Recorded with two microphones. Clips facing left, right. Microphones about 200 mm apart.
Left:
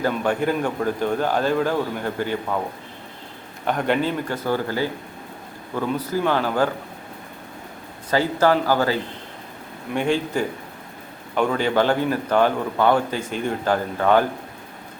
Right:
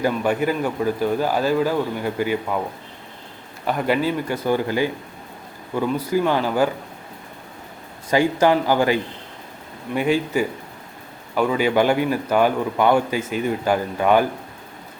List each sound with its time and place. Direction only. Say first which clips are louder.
0.1 s a man's voice: right 1 dB; 5° right (ahead or behind)
3.7 s a man's voice: right 1 dB; 5° right (ahead or behind)
8.1 s a man's voice: right 2 dB; 15° right (ahead or behind)